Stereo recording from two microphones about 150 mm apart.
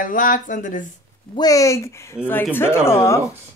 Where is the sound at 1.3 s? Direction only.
25° left (ahead or behind).